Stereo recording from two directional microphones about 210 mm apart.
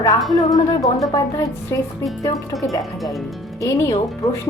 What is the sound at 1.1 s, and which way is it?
A woman's voice, 15° left (ahead or behind).